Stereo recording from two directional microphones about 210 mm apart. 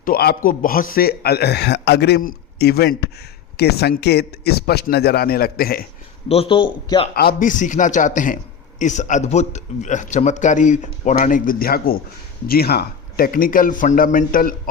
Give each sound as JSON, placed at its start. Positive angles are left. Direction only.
{"t": 0.0, "sound": "a man's voice", "side_deg": 45}
{"t": 6.2, "sound": "speech", "side_deg": 25}
{"t": 7.2, "sound": "a man's voice", "side_deg": 45}